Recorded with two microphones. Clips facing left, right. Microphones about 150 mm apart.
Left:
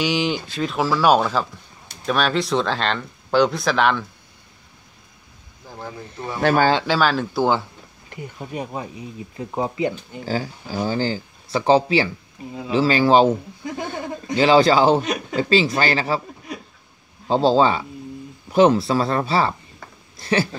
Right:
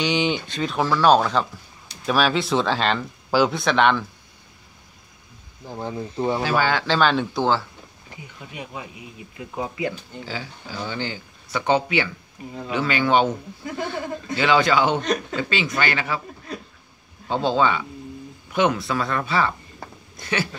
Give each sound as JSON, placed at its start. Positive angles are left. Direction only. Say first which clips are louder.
{"t": 0.0, "sound": "speech", "louder": "left 1 dB", "side_deg": 5}
{"t": 5.7, "sound": "speech", "louder": "right 5 dB", "side_deg": -20}
{"t": 6.4, "sound": "speech", "louder": "left 8 dB", "side_deg": 50}
{"t": 6.9, "sound": "speech", "louder": "even", "side_deg": 5}
{"t": 8.2, "sound": "speech", "louder": "left 8 dB", "side_deg": 45}
{"t": 10.2, "sound": "speech", "louder": "left 9 dB", "side_deg": 40}
{"t": 13.7, "sound": "speech", "louder": "right 1 dB", "side_deg": 20}
{"t": 14.4, "sound": "speech", "louder": "left 5 dB", "side_deg": 35}
{"t": 16.5, "sound": "speech", "louder": "even", "side_deg": 15}
{"t": 17.3, "sound": "speech", "louder": "left 4 dB", "side_deg": 35}
{"t": 20.2, "sound": "a sound", "louder": "left 5 dB", "side_deg": 35}